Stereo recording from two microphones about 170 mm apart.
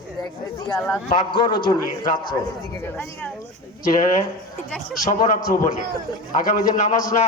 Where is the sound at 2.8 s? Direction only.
15° left (ahead or behind).